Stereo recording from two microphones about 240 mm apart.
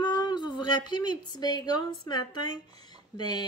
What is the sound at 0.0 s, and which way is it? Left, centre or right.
Speech, centre.